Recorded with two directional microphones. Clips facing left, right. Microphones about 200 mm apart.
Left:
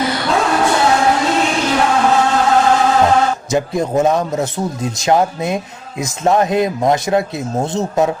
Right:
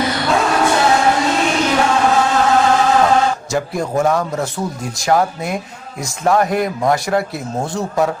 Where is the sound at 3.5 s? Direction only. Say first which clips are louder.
Left 3 dB; 20° left (ahead or behind).